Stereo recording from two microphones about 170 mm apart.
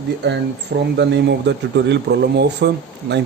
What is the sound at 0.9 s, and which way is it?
Speech, 85° right.